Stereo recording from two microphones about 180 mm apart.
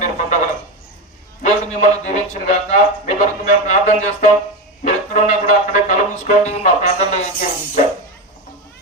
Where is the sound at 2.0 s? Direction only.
40° left (ahead or behind).